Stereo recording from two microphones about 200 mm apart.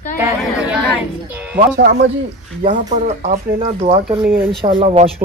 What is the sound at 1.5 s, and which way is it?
Speech, 50° right (ahead or behind).